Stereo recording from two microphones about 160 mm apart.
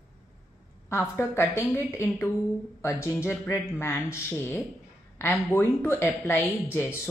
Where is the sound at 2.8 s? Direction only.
15° left (ahead or behind).